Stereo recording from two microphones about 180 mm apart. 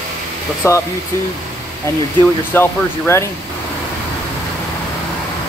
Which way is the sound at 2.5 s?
15° left (ahead or behind).